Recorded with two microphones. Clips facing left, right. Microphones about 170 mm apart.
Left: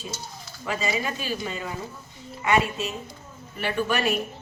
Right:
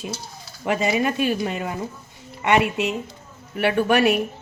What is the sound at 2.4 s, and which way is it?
A woman's voice, 70° right (ahead or behind).